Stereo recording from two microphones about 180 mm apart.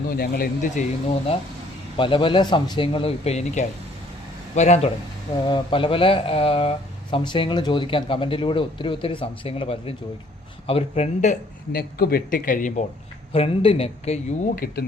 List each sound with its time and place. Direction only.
0.1 s speech: 55° left (ahead or behind)
2.0 s speech: 30° left (ahead or behind)
5.5 s speech: 25° left (ahead or behind)
11.7 s speech: 60° left (ahead or behind)
13.3 s speech: 30° left (ahead or behind)
14.5 s speech: 55° left (ahead or behind)